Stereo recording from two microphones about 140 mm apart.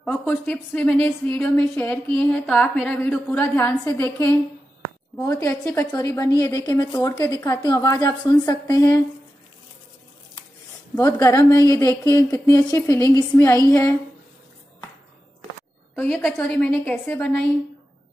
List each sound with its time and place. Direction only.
0.1 s a woman's voice: 15° left (ahead or behind)
5.7 s a woman's voice: 10° left (ahead or behind)
5.9 s a woman's voice: 25° left (ahead or behind)
11.0 s a woman's voice: 25° left (ahead or behind)
15.9 s a woman's voice: 5° left (ahead or behind)
17.2 s a woman's voice: 5° left (ahead or behind)